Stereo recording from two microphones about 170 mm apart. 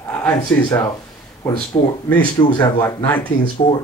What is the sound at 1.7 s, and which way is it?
Speech, 25° left (ahead or behind).